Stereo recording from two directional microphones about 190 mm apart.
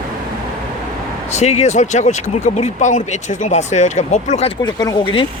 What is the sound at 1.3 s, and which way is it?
Speech, 35° left (ahead or behind).